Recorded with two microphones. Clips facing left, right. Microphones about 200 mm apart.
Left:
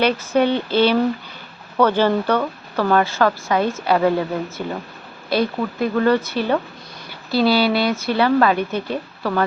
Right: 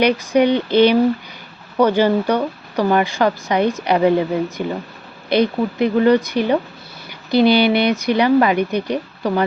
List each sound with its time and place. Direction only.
0.0 s speech: 15° right (ahead or behind)